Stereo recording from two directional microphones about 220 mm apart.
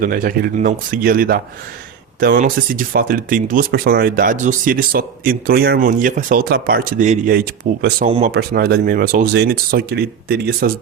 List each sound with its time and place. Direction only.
0.0 s speech: 40° right (ahead or behind)
8.0 s speech: 30° right (ahead or behind)
8.3 s speech: 45° right (ahead or behind)